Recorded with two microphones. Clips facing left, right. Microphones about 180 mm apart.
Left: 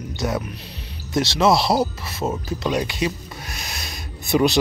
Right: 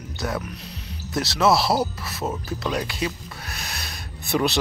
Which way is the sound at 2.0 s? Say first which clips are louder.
Left 3 dB; 25° left (ahead or behind).